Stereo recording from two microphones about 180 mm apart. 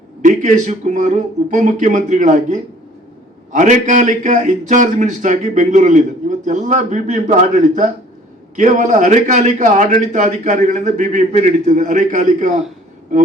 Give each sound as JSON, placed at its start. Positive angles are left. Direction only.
{"t": 0.2, "sound": "a man's voice", "side_deg": -45}